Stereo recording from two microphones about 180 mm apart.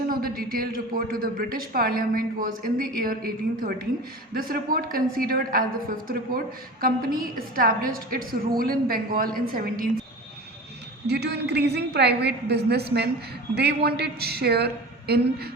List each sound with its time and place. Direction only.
0.1 s a man's voice: 55° right (ahead or behind)
6.8 s a man's voice: 55° right (ahead or behind)
11.0 s a woman's voice: 70° right (ahead or behind)